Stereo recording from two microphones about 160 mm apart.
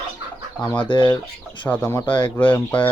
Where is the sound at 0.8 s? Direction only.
30° left (ahead or behind).